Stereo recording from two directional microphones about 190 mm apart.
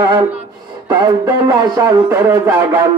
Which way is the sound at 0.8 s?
20° right (ahead or behind).